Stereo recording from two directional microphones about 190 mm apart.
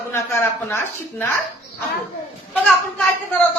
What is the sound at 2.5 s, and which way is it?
Speech, 5° left (ahead or behind).